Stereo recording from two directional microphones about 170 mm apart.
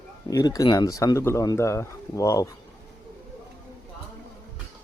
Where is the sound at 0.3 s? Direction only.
20° left (ahead or behind).